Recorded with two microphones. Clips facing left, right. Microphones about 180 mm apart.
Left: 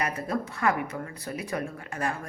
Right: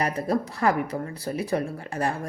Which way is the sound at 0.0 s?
35° right (ahead or behind).